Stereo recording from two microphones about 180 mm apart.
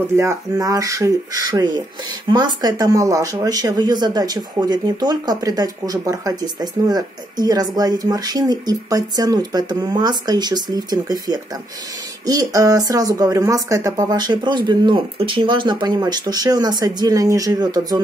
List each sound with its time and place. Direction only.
0.1 s speech: 15° right (ahead or behind)